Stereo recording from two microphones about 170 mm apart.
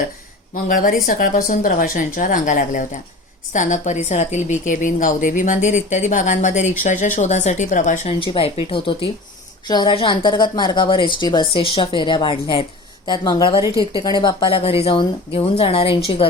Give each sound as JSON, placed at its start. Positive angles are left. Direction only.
{"t": 0.5, "sound": "a woman's voice", "side_deg": 55}
{"t": 8.2, "sound": "a woman's voice", "side_deg": 30}
{"t": 13.6, "sound": "speech", "side_deg": -20}
{"t": 14.0, "sound": "a woman's voice", "side_deg": 25}